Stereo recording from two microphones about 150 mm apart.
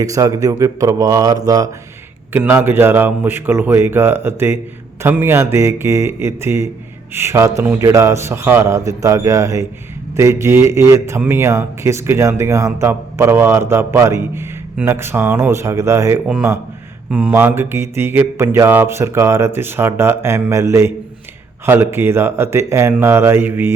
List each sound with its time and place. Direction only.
0.0 s speech: 20° right (ahead or behind)
2.3 s a man's voice: 15° right (ahead or behind)